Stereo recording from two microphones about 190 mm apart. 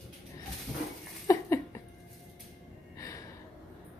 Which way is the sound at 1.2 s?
15° left (ahead or behind).